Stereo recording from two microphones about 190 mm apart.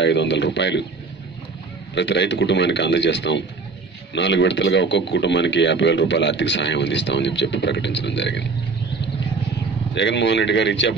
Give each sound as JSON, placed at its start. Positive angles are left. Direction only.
{"t": 0.0, "sound": "speech", "side_deg": 65}
{"t": 2.0, "sound": "speech", "side_deg": 65}
{"t": 9.9, "sound": "speech", "side_deg": 70}